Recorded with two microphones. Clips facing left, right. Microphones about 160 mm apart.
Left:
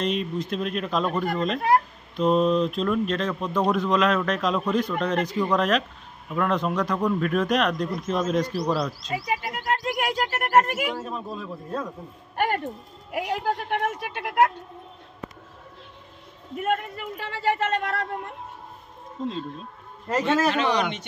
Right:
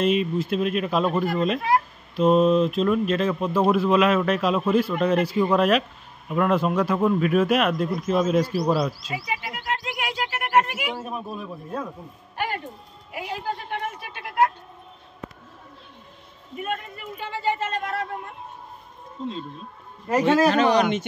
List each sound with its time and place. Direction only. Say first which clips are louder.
0.0 s speech: right 5 dB; 5° right (ahead or behind)
9.1 s speech: left 3 dB; 45° left (ahead or behind)
10.9 s speech: even; 10° right (ahead or behind)
12.4 s speech: left 4 dB; 50° left (ahead or behind)
13.1 s speech: left 4 dB; 70° left (ahead or behind)
16.5 s speech: left 4 dB; 75° left (ahead or behind)
20.4 s speech: right 4 dB; 40° right (ahead or behind)